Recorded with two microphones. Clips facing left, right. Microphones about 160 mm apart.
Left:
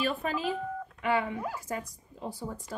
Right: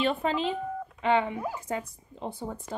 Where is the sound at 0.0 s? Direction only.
25° right (ahead or behind).